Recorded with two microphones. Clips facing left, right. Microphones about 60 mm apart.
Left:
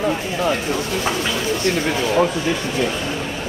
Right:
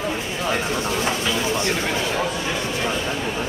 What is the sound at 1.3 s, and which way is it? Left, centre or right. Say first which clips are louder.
Speech: left 2 dB; right.